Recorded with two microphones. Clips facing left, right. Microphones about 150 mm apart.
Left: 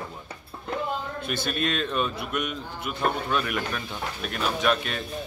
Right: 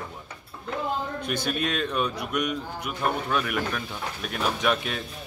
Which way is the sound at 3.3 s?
5° right (ahead or behind).